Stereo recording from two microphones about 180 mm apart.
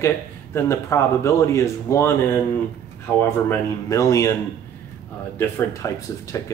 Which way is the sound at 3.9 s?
15° left (ahead or behind).